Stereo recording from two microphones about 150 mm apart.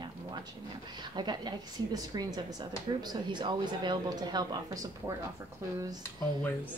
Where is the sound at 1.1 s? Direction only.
30° right (ahead or behind).